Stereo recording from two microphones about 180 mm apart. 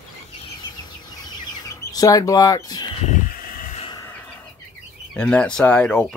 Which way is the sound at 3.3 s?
50° left (ahead or behind).